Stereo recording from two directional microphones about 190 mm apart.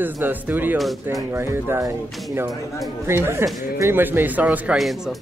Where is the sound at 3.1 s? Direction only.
10° right (ahead or behind).